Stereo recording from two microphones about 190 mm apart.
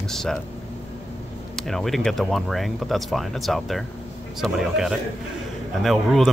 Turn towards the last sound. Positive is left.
turn(degrees=0)  # may be behind; listen again after turning